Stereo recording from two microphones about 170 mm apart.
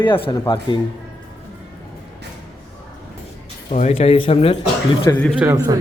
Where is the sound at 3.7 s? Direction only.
40° left (ahead or behind).